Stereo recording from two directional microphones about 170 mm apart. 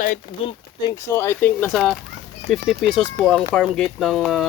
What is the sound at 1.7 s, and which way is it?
Speech, centre (ahead or behind).